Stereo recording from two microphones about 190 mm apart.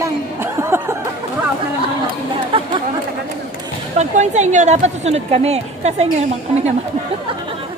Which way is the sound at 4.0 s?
35° right (ahead or behind).